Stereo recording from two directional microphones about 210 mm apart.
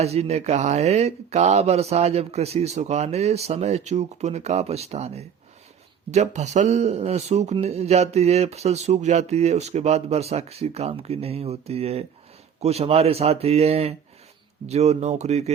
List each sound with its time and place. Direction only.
0.0 s speech: 30° right (ahead or behind)